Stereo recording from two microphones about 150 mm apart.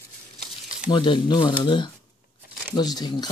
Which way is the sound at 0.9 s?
30° left (ahead or behind).